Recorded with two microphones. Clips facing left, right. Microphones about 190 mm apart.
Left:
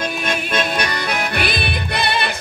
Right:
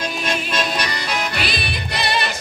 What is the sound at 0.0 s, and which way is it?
Music, 55° left (ahead or behind).